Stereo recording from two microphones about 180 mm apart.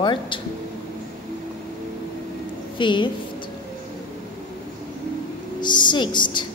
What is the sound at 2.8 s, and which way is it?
Speech, 25° left (ahead or behind).